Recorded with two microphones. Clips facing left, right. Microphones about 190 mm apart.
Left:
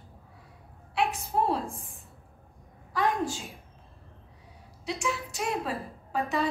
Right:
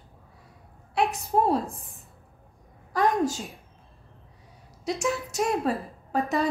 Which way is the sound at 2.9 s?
40° right (ahead or behind).